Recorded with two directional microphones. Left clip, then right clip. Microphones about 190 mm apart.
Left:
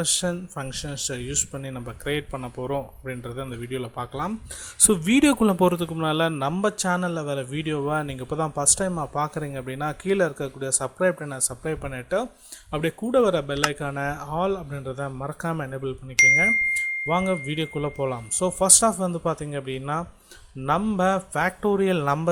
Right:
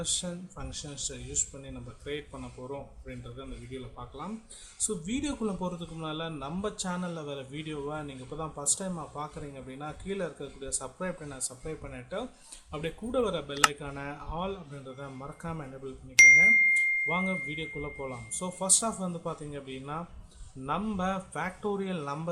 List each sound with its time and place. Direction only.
0.0 s a man's voice: 40° left (ahead or behind)
16.1 s speech: centre (ahead or behind)
17.1 s a man's voice: 35° left (ahead or behind)